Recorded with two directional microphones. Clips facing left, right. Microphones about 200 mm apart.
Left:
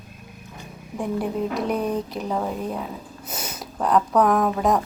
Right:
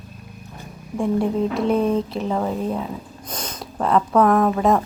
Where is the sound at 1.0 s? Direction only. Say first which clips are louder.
Right 5 dB; centre (ahead or behind).